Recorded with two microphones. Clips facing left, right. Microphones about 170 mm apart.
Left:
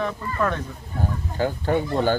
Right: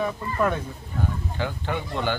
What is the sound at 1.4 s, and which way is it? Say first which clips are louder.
Speech: left 8 dB; 40° left (ahead or behind).